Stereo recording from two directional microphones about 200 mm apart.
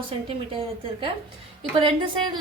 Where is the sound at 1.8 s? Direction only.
25° right (ahead or behind).